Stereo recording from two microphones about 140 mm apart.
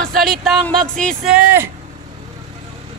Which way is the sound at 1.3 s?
15° right (ahead or behind).